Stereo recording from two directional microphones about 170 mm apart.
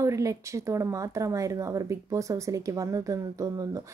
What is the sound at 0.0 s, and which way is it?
Speech, 20° right (ahead or behind).